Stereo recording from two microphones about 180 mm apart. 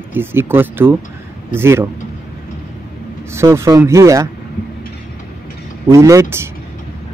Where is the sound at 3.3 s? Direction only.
15° right (ahead or behind).